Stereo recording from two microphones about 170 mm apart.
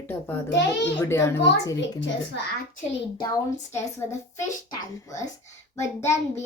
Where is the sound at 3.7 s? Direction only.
15° left (ahead or behind).